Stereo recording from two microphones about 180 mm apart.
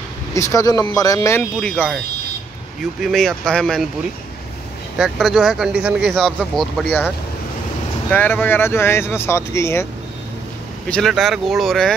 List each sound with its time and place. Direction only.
0.3 s speech: 20° left (ahead or behind)
1.6 s speech: 5° left (ahead or behind)
3.0 s speech: centre (ahead or behind)
4.9 s speech: centre (ahead or behind)
8.1 s speech: 10° left (ahead or behind)
10.9 s speech: centre (ahead or behind)